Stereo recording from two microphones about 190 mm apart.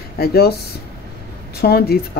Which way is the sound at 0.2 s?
55° left (ahead or behind).